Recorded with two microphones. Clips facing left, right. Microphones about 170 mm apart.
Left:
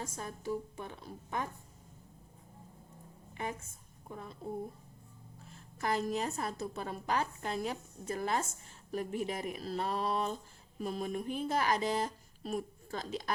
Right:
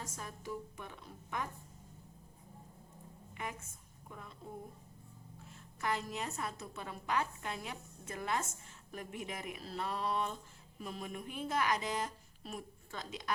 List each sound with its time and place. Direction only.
0.0 s a woman's voice: 30° left (ahead or behind)
4.1 s a woman's voice: 35° left (ahead or behind)
5.8 s a woman's voice: 35° left (ahead or behind)